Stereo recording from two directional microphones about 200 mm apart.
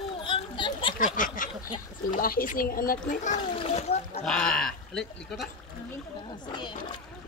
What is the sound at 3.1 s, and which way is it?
Speech, 35° left (ahead or behind).